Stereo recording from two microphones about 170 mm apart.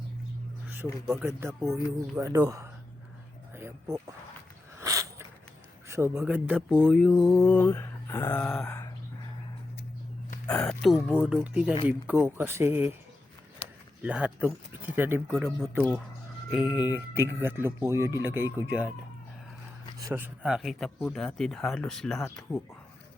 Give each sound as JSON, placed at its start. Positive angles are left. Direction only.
{"t": 1.1, "sound": "speech", "side_deg": -15}
{"t": 3.5, "sound": "music", "side_deg": -15}
{"t": 4.8, "sound": "a sound", "side_deg": -20}
{"t": 5.9, "sound": "speech", "side_deg": -15}
{"t": 10.6, "sound": "speech", "side_deg": 0}
{"t": 14.0, "sound": "speech", "side_deg": -5}
{"t": 16.6, "sound": "speech", "side_deg": 25}
{"t": 16.9, "sound": "speech", "side_deg": -10}
{"t": 20.0, "sound": "speech", "side_deg": -10}